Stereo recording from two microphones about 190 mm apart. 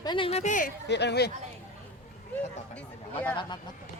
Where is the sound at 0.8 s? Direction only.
65° left (ahead or behind).